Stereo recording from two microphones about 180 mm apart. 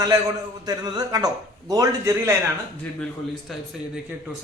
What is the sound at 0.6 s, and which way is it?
A man's voice, 20° right (ahead or behind).